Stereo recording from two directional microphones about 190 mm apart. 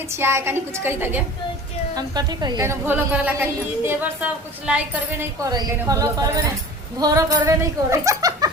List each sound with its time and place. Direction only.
0.1 s speech: 15° right (ahead or behind)
5.5 s speech: 20° right (ahead or behind)